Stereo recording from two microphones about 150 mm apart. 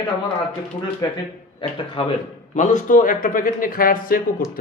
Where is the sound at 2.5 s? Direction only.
55° left (ahead or behind).